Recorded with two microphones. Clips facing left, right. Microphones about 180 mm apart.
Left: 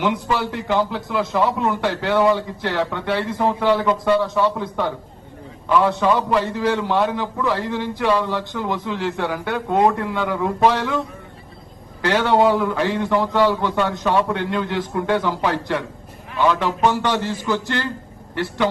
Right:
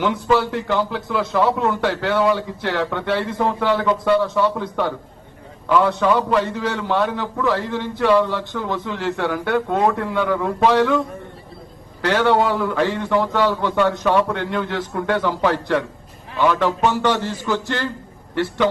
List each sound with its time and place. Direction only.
0.0 s a man's voice: 15° left (ahead or behind)
12.0 s a man's voice: 15° left (ahead or behind)